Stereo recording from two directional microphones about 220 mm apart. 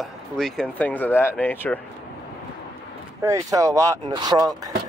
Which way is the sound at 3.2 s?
15° right (ahead or behind).